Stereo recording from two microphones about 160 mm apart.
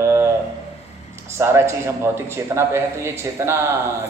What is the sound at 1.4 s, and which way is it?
A man's voice, 15° right (ahead or behind).